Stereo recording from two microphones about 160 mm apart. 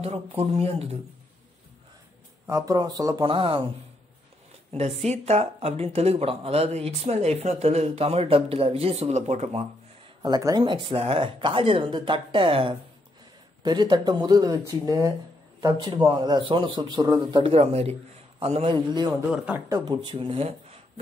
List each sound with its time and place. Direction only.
0.0 s speech: 40° right (ahead or behind)
2.4 s a man's voice: 20° right (ahead or behind)
3.3 s speech: 30° right (ahead or behind)
4.7 s speech: 40° right (ahead or behind)
10.2 s a man's voice: 25° right (ahead or behind)
19.3 s speech: 10° right (ahead or behind)
19.7 s speech: 25° right (ahead or behind)